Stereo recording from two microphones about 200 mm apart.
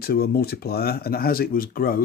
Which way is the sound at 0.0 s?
50° left (ahead or behind).